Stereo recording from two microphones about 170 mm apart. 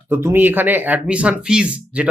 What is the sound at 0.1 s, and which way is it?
Speech, 15° right (ahead or behind).